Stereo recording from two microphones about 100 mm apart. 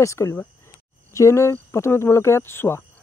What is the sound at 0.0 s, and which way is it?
Speech, 30° left (ahead or behind).